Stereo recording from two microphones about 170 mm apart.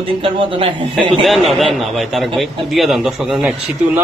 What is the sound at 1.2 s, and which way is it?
A man's voice, centre (ahead or behind).